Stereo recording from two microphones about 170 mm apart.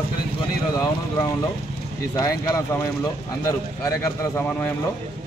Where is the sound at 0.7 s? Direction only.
25° left (ahead or behind).